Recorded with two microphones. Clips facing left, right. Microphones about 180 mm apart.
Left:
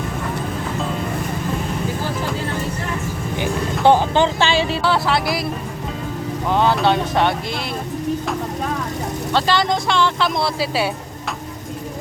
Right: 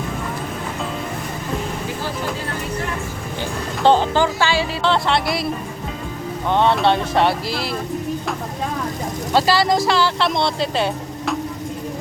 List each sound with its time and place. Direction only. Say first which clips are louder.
3.4 s a sound: left 1 dB; 10° left (ahead or behind)
4.2 s speech: left 1 dB; 25° left (ahead or behind)
4.8 s speech: even; 5° left (ahead or behind)
6.5 s speech: even; centre (ahead or behind)
9.3 s speech: right 2 dB; 5° right (ahead or behind)